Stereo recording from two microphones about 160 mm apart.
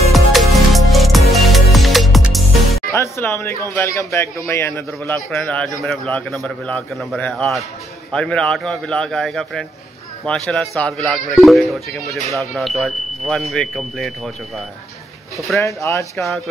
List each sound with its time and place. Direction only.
0.1 s music: centre (ahead or behind)
2.9 s a man's voice: 15° left (ahead or behind)
15.3 s speech: centre (ahead or behind)
15.6 s speech: 20° left (ahead or behind)